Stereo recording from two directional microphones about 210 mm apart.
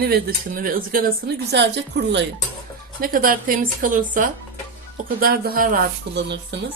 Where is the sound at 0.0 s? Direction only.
45° right (ahead or behind).